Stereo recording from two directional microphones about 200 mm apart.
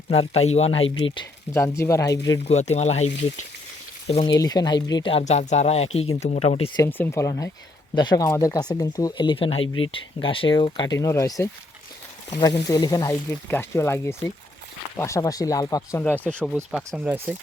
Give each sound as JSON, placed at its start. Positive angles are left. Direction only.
{"t": 0.4, "sound": "speech", "side_deg": 30}
{"t": 1.5, "sound": "speech", "side_deg": 15}
{"t": 2.4, "sound": "speech", "side_deg": 35}
{"t": 6.8, "sound": "speech", "side_deg": 10}